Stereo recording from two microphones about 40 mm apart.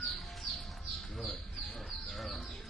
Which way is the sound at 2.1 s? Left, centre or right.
Centre.